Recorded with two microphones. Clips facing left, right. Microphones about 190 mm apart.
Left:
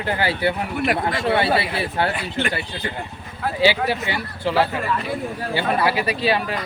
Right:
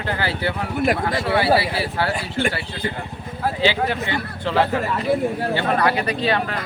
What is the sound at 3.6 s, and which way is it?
Speech, 10° left (ahead or behind).